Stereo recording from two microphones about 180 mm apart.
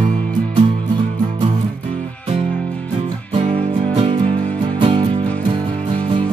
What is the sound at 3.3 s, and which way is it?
Music, 30° right (ahead or behind).